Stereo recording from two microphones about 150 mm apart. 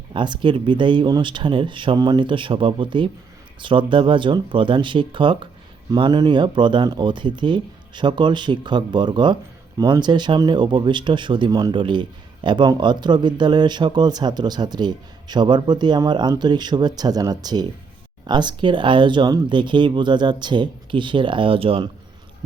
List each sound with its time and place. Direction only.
0.1 s speech: 30° right (ahead or behind)